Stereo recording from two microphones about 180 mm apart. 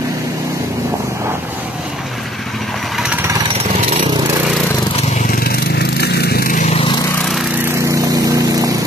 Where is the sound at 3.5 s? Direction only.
35° right (ahead or behind).